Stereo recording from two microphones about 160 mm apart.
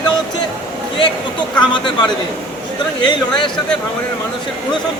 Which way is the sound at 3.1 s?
30° left (ahead or behind).